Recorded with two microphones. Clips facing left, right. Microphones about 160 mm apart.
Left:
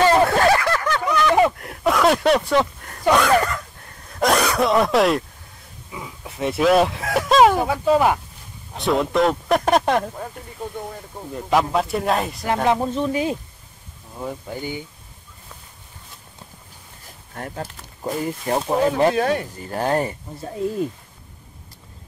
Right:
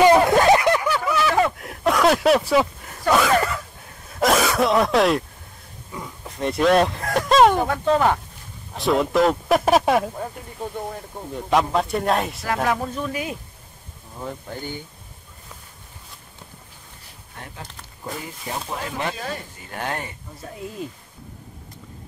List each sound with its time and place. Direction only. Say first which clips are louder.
0.0 s a sound: right 1 dB; 15° right (ahead or behind)
0.8 s a sound: left 2 dB; 5° right (ahead or behind)
4.1 s throat clearing: even; centre (ahead or behind)
5.9 s a sound: even; 5° left (ahead or behind)
8.7 s speech: even; centre (ahead or behind)
12.6 s speech: left 6 dB; 25° left (ahead or behind)
14.2 s speech: left 3 dB; 10° left (ahead or behind)
18.5 s speech: left 10 dB; 45° left (ahead or behind)
19.1 s speech: left 11 dB; 65° left (ahead or behind)
19.6 s speech: left 6 dB; 35° left (ahead or behind)